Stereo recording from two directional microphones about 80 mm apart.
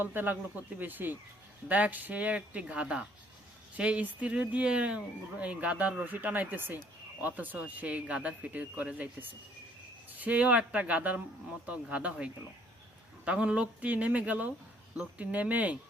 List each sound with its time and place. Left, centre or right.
0.0 s speech: right
10.2 s speech: centre